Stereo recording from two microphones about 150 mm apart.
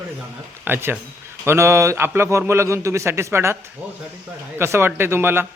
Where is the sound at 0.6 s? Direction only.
15° right (ahead or behind).